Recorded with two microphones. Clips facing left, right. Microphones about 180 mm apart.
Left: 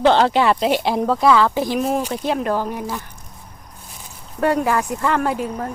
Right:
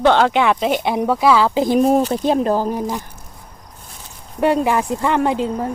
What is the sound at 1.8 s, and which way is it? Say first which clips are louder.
Speech: right 6 dB; 35° right (ahead or behind).